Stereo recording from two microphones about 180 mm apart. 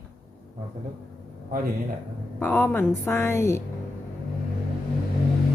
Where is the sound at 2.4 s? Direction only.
10° left (ahead or behind).